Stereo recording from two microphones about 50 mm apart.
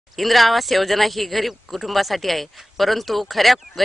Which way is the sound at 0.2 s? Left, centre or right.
Centre.